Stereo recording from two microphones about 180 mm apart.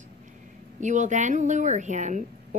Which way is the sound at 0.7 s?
40° right (ahead or behind).